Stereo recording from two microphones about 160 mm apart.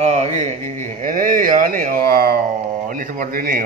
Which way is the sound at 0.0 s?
40° right (ahead or behind).